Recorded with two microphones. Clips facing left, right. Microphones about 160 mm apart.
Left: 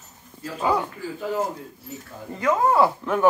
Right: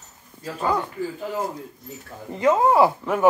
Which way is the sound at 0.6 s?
10° left (ahead or behind).